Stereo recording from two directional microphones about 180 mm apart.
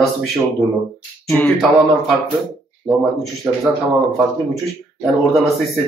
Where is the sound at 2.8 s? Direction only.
Centre (ahead or behind).